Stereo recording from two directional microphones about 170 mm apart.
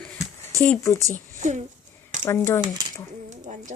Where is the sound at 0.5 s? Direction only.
10° left (ahead or behind).